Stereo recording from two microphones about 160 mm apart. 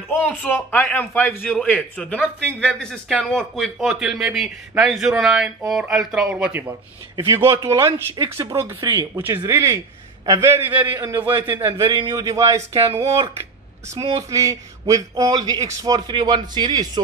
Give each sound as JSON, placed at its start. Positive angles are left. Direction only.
{"t": 0.2, "sound": "a man's voice", "side_deg": 10}
{"t": 7.3, "sound": "a man's voice", "side_deg": -15}